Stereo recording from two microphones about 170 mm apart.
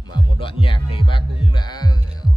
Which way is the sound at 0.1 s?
30° left (ahead or behind).